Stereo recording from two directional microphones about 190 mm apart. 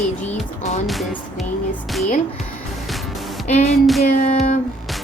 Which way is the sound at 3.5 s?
40° left (ahead or behind).